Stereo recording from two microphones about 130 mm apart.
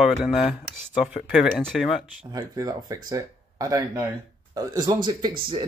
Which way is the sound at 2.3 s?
25° right (ahead or behind).